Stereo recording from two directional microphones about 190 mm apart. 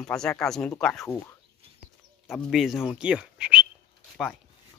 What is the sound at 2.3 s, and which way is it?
Speech, centre (ahead or behind).